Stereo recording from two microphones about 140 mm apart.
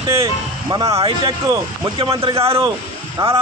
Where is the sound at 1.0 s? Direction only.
40° right (ahead or behind).